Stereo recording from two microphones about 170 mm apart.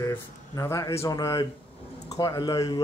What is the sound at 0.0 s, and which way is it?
Speech, 15° left (ahead or behind).